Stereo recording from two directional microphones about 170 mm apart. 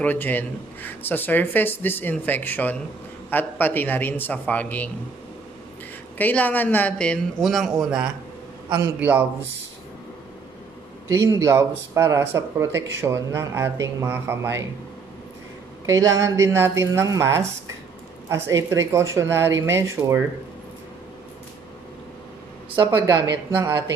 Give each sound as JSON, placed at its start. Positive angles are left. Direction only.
{"t": 0.0, "sound": "speech", "side_deg": 10}
{"t": 6.1, "sound": "speech", "side_deg": 10}
{"t": 8.6, "sound": "a man's voice", "side_deg": -25}
{"t": 11.1, "sound": "speech", "side_deg": -20}
{"t": 15.8, "sound": "speech", "side_deg": -20}
{"t": 22.8, "sound": "speech", "side_deg": -15}